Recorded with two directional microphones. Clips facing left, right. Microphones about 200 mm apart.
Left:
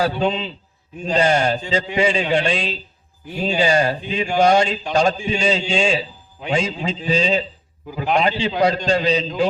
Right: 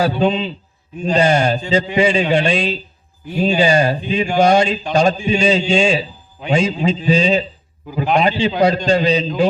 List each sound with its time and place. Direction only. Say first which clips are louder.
0.0 s a man's voice: right 4 dB; 15° right (ahead or behind)